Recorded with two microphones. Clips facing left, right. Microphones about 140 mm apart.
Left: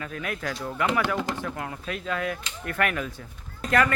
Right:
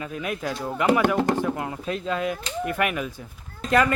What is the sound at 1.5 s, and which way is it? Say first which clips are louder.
Speech: right 5 dB; 25° right (ahead or behind).